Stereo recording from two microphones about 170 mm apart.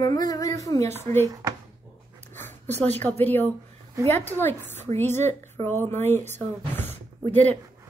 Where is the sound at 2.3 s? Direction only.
10° left (ahead or behind).